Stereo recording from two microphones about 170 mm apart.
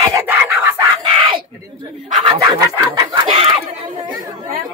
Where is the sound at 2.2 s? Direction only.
25° right (ahead or behind).